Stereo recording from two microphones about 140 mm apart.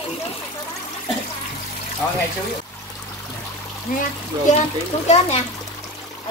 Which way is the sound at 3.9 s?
75° left (ahead or behind).